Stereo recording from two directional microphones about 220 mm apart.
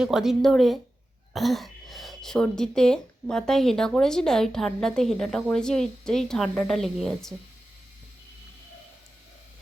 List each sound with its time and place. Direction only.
0.0 s speech: centre (ahead or behind)